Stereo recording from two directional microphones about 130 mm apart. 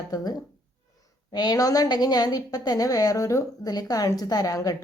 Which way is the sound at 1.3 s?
30° left (ahead or behind).